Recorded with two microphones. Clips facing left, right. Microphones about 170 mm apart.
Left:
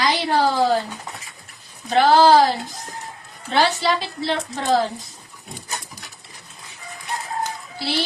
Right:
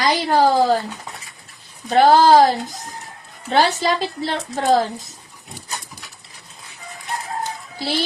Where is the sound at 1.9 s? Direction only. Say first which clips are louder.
Right 2 dB; 45° right (ahead or behind).